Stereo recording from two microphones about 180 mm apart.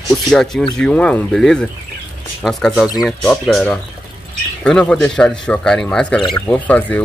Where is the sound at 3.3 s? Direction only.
Centre (ahead or behind).